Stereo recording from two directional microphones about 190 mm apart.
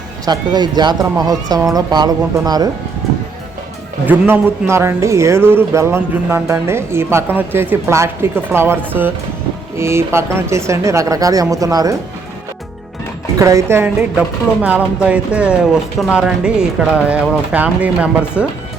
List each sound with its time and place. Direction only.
0.3 s speech: 20° right (ahead or behind)
4.0 s speech: 10° right (ahead or behind)
13.4 s speech: 15° right (ahead or behind)